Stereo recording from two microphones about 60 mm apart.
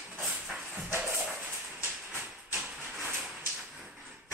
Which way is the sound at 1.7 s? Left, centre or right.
Right.